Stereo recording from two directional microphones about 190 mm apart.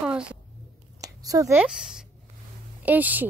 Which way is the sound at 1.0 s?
20° right (ahead or behind).